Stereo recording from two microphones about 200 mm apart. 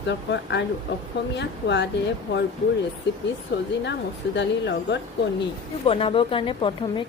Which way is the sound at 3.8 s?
60° left (ahead or behind).